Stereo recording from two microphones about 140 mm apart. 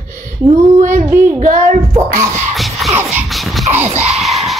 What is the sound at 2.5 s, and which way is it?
Music, centre (ahead or behind).